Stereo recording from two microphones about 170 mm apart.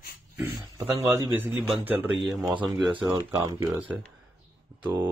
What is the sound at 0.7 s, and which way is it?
Speech, 20° right (ahead or behind).